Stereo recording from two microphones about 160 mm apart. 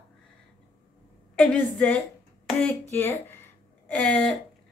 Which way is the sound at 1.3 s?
5° left (ahead or behind).